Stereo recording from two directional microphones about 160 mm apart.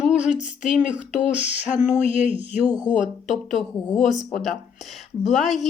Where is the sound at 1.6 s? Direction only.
45° left (ahead or behind).